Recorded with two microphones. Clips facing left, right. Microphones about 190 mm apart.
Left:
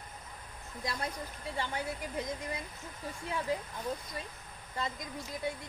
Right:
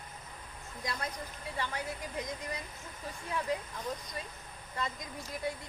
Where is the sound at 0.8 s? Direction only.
25° left (ahead or behind).